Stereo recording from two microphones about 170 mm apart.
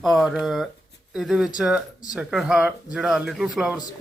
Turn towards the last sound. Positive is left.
turn(degrees=-5)  # may be behind; listen again after turning